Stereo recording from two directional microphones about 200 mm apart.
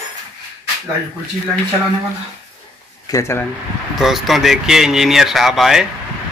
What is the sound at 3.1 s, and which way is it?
Speech, 20° left (ahead or behind).